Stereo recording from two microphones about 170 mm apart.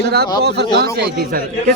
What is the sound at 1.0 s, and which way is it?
Speech, 60° right (ahead or behind).